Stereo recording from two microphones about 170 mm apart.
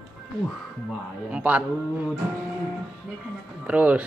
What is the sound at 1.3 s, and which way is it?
Speech, 10° right (ahead or behind).